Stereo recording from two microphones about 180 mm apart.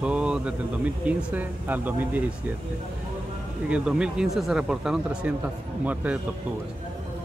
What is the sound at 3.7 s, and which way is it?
A man's voice, 5° right (ahead or behind).